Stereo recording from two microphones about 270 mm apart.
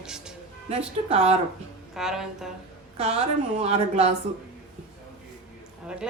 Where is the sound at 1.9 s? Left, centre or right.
Centre.